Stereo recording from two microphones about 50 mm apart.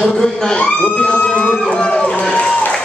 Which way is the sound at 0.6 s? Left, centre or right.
Left.